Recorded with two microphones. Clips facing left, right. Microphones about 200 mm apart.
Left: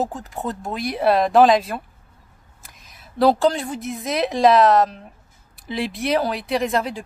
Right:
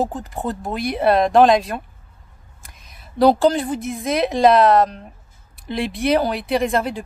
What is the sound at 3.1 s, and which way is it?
A woman's voice, centre (ahead or behind).